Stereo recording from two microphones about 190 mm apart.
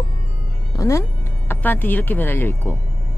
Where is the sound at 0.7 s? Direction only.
15° left (ahead or behind).